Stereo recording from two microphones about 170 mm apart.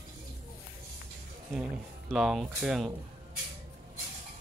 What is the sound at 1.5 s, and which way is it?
Speech, 5° right (ahead or behind).